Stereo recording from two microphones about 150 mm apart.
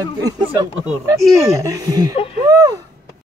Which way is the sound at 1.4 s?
20° right (ahead or behind).